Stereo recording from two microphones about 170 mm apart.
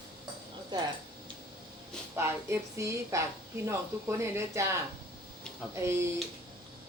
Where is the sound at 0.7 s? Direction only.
25° right (ahead or behind).